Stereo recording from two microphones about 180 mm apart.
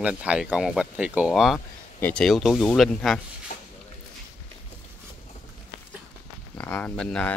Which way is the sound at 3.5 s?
45° left (ahead or behind).